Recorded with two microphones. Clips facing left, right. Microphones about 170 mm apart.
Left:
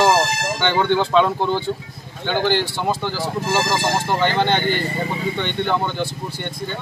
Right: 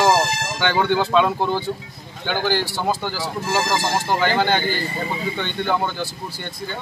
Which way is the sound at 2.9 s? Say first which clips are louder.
Left 2 dB; 5° right (ahead or behind).